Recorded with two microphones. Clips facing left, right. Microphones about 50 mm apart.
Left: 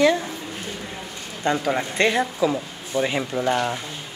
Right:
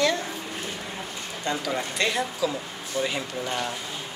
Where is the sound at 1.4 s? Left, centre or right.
Left.